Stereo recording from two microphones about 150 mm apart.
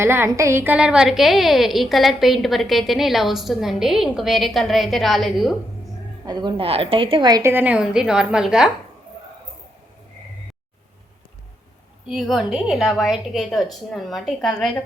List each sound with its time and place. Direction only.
0.0 s a woman's voice: 15° right (ahead or behind); by 5.5 s centre (ahead or behind)
6.2 s a woman's voice: 35° right (ahead or behind)
7.5 s a woman's voice: 10° right (ahead or behind)
12.0 s a woman's voice: 5° right (ahead or behind)